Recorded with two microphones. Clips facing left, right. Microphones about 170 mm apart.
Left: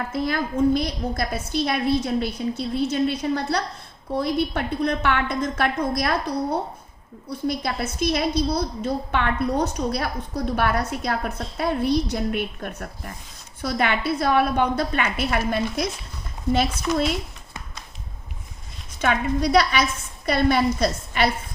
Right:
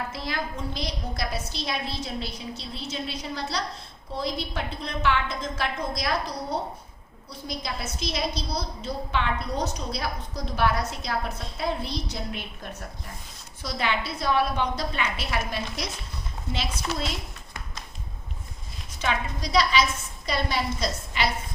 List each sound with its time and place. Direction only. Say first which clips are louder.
0.1 s a woman's voice: left 8 dB; 50° left (ahead or behind)
19.0 s a woman's voice: left 7 dB; 60° left (ahead or behind)